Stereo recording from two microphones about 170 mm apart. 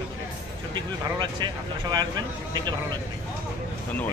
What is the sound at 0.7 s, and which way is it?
Speech, 25° right (ahead or behind).